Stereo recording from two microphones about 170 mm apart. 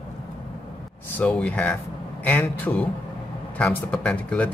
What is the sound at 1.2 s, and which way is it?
Speech, 5° left (ahead or behind).